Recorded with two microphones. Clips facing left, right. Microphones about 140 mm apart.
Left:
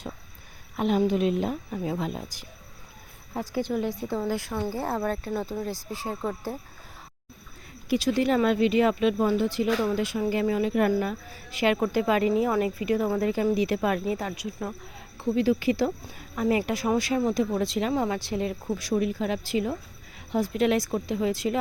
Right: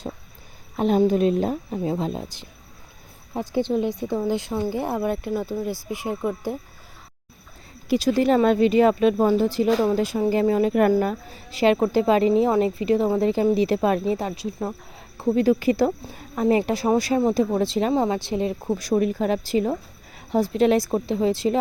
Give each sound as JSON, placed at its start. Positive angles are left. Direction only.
{"t": 0.8, "sound": "a woman's voice", "side_deg": -35}
{"t": 7.9, "sound": "speech", "side_deg": -40}
{"t": 11.3, "sound": "a woman's voice", "side_deg": -30}
{"t": 15.2, "sound": "speech", "side_deg": -45}